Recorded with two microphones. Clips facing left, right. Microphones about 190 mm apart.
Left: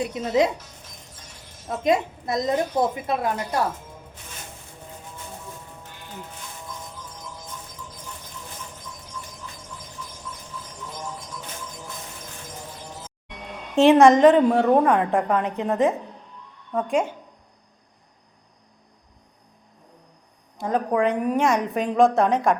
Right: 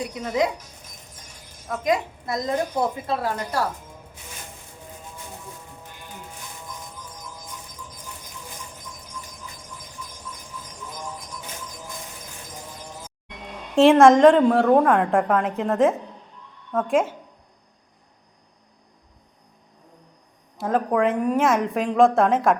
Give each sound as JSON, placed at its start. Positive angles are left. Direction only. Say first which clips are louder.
{"t": 0.0, "sound": "a woman's voice", "louder": "left 3 dB", "side_deg": 20}
{"t": 1.6, "sound": "a woman's voice", "louder": "left 2 dB", "side_deg": 25}
{"t": 13.7, "sound": "a woman's voice", "louder": "right 1 dB", "side_deg": 0}
{"t": 20.6, "sound": "a woman's voice", "louder": "right 1 dB", "side_deg": 0}